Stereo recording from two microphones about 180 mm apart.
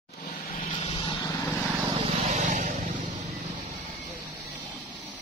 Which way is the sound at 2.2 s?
45° right (ahead or behind).